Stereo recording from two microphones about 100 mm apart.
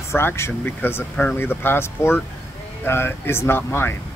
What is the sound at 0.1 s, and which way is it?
Speech, 25° left (ahead or behind).